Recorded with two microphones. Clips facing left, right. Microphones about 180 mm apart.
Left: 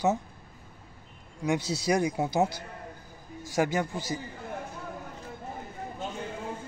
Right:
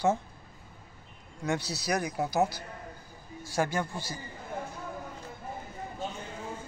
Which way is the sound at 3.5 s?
15° left (ahead or behind).